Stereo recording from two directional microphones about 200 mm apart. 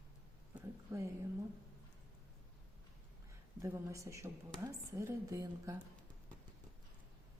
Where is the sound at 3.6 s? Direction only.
15° right (ahead or behind).